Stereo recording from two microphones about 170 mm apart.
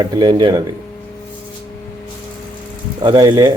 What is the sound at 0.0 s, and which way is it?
Speech, 25° right (ahead or behind).